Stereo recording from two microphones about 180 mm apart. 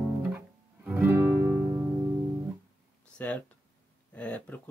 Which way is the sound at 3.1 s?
5° left (ahead or behind).